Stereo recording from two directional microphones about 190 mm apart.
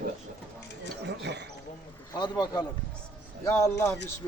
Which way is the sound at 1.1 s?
65° right (ahead or behind).